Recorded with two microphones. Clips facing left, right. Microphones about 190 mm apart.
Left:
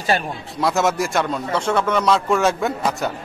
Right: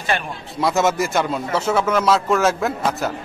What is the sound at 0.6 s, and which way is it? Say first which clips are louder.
A man's voice: right 1 dB; centre (ahead or behind).